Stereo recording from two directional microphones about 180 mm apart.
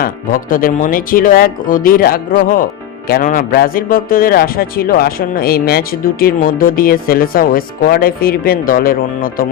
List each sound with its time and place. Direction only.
0.0 s speech: 50° left (ahead or behind)